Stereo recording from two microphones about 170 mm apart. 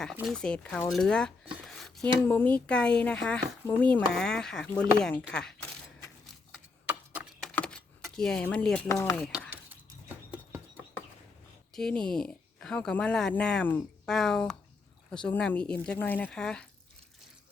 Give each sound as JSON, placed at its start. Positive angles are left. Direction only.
{"t": 0.2, "sound": "speech", "side_deg": 5}
{"t": 7.1, "sound": "a sound", "side_deg": -5}
{"t": 7.5, "sound": "keys jangling", "side_deg": 5}
{"t": 8.9, "sound": "speech", "side_deg": 15}
{"t": 9.2, "sound": "a sound", "side_deg": 0}
{"t": 11.7, "sound": "speech", "side_deg": 5}